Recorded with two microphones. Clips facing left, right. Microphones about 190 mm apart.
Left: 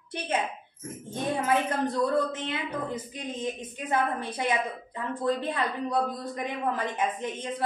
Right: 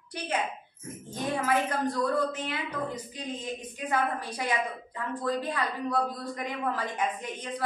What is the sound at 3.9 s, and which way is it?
A woman's voice, 25° left (ahead or behind).